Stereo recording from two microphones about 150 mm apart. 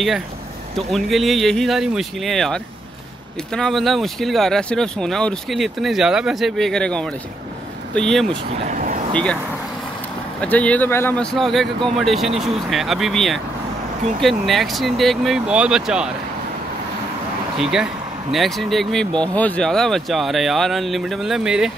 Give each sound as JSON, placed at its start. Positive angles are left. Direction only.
{"t": 0.7, "sound": "speech", "side_deg": 0}
{"t": 8.6, "sound": "vehicle", "side_deg": -55}
{"t": 9.1, "sound": "speech", "side_deg": 5}
{"t": 10.4, "sound": "speech", "side_deg": 10}
{"t": 17.6, "sound": "speech", "side_deg": -5}